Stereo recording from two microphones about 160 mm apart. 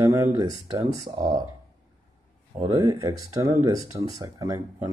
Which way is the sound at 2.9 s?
20° right (ahead or behind).